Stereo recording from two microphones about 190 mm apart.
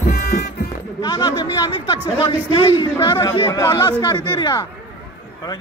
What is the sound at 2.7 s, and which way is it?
Chatter, 20° left (ahead or behind).